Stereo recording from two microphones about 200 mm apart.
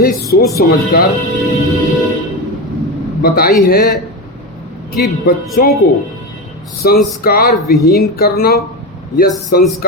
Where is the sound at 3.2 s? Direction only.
50° left (ahead or behind).